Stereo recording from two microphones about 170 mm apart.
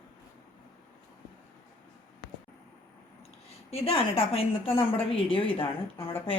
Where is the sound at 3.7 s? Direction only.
35° left (ahead or behind).